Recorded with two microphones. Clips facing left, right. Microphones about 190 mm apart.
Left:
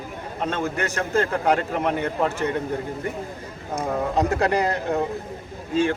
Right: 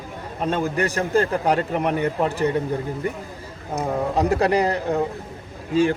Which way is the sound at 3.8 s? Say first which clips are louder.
Right 1 dB; 15° right (ahead or behind).